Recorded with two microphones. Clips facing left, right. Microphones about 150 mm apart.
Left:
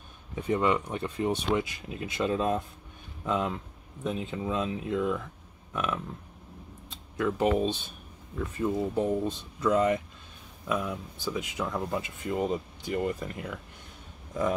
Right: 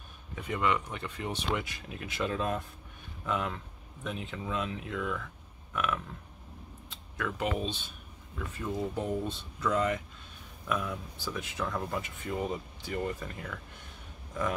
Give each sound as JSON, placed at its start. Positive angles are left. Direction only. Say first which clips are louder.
{"t": 0.4, "sound": "speech", "louder": "left 4 dB", "side_deg": 30}
{"t": 5.7, "sound": "a sound", "louder": "left 1 dB", "side_deg": 25}
{"t": 7.2, "sound": "speech", "louder": "left 7 dB", "side_deg": 25}
{"t": 7.4, "sound": "speech", "louder": "left 7 dB", "side_deg": 45}
{"t": 8.7, "sound": "speech", "louder": "left 3 dB", "side_deg": 25}